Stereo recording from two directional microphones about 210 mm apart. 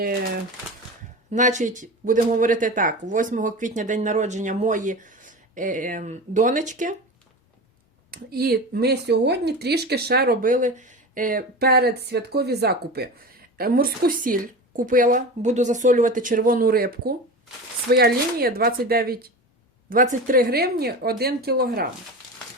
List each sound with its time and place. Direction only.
1.3 s speech: 35° right (ahead or behind)
8.1 s speech: 45° right (ahead or behind)